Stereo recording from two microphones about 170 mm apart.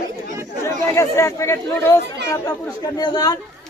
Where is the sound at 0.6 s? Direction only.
15° left (ahead or behind).